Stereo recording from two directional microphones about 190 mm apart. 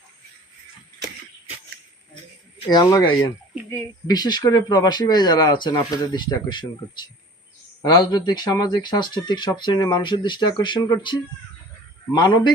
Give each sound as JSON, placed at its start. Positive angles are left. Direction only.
{"t": 2.6, "sound": "speech", "side_deg": 20}